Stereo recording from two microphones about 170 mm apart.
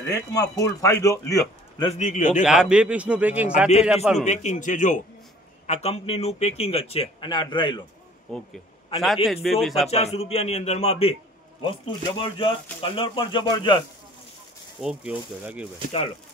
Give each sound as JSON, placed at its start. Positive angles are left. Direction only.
{"t": 0.3, "sound": "a man's voice", "side_deg": 20}
{"t": 2.0, "sound": "a man's voice", "side_deg": 50}
{"t": 2.4, "sound": "a man's voice", "side_deg": -5}
{"t": 4.2, "sound": "a man's voice", "side_deg": 45}
{"t": 5.7, "sound": "a man's voice", "side_deg": 35}
{"t": 8.3, "sound": "speech", "side_deg": 0}
{"t": 9.8, "sound": "a man's voice", "side_deg": 40}
{"t": 14.8, "sound": "speech", "side_deg": -5}